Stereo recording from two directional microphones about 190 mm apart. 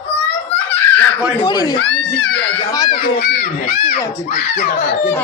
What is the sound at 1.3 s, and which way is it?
Speech, 25° left (ahead or behind).